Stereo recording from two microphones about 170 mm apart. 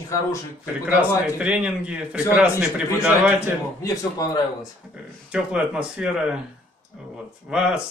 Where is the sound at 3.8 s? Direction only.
20° left (ahead or behind).